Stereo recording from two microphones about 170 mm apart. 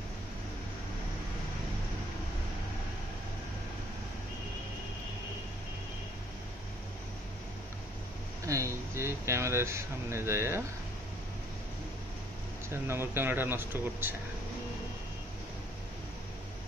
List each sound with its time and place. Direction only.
8.5 s speech: 20° right (ahead or behind)
12.8 s speech: 15° right (ahead or behind)